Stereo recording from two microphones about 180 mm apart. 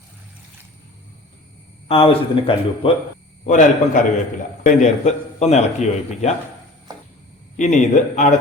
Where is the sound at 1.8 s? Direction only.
30° left (ahead or behind).